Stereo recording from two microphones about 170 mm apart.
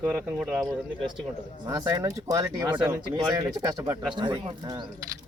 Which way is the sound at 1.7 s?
20° right (ahead or behind).